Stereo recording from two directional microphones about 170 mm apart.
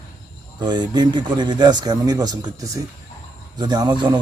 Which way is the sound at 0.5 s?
25° right (ahead or behind).